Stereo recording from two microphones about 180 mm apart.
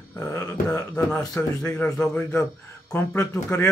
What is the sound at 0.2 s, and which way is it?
Speech, 15° left (ahead or behind).